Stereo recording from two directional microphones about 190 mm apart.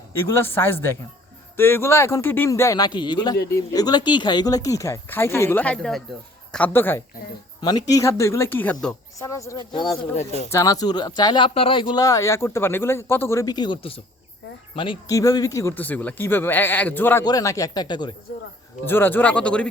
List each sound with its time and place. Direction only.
0.2 s speech: 10° left (ahead or behind)
7.6 s speech: 20° left (ahead or behind); by 9.0 s 5° left (ahead or behind)
9.1 s speech: 15° left (ahead or behind)
18.9 s speech: 10° left (ahead or behind)